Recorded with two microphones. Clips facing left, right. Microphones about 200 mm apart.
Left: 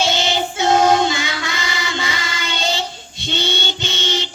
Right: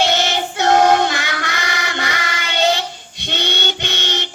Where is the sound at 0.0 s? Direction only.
60° right (ahead or behind).